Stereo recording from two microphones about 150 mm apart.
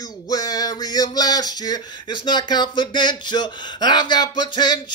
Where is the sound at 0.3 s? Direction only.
25° left (ahead or behind).